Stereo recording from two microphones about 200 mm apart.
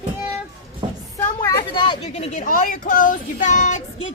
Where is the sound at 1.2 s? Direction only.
15° left (ahead or behind); by 3.8 s 35° left (ahead or behind).